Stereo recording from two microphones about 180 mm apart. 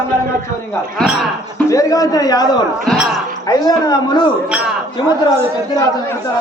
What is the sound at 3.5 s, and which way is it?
Speech, 20° left (ahead or behind).